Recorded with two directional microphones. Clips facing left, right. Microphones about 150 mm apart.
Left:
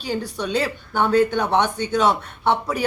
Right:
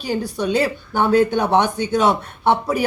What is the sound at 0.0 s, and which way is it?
A woman's voice, 10° right (ahead or behind).